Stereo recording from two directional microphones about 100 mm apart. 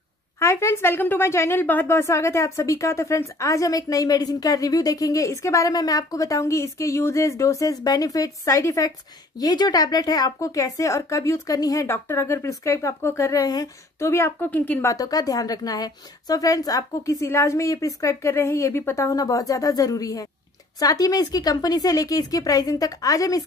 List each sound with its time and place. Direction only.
0.4 s speech: 30° left (ahead or behind)
13.9 s a woman's voice: 25° left (ahead or behind)
14.9 s speech: 35° left (ahead or behind)